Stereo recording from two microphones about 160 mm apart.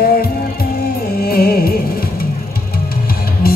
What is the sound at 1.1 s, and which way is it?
Music, 70° left (ahead or behind).